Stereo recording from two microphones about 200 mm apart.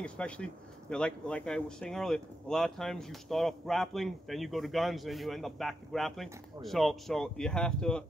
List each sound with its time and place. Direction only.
0.0 s speech: 5° left (ahead or behind)